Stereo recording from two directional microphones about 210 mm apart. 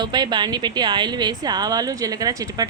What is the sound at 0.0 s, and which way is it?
A woman's voice, 20° right (ahead or behind).